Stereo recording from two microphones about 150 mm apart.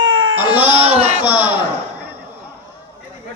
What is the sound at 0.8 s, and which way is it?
Speech, 40° right (ahead or behind).